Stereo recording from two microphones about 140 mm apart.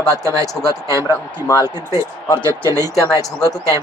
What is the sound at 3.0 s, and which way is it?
Speech, 25° left (ahead or behind).